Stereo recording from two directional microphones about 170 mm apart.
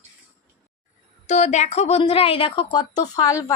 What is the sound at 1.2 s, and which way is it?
A woman's voice, 40° left (ahead or behind).